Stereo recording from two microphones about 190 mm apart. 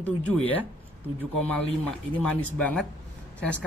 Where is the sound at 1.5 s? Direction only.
5° left (ahead or behind).